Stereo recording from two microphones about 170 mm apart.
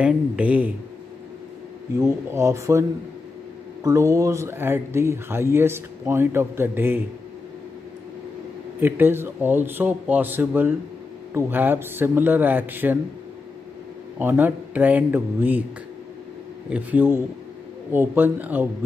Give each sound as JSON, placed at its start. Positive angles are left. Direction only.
{"t": 0.0, "sound": "speech", "side_deg": -10}
{"t": 2.0, "sound": "speech", "side_deg": -20}
{"t": 3.8, "sound": "speech", "side_deg": -20}
{"t": 8.7, "sound": "speech", "side_deg": -10}
{"t": 14.1, "sound": "speech", "side_deg": -10}
{"t": 16.6, "sound": "speech", "side_deg": -10}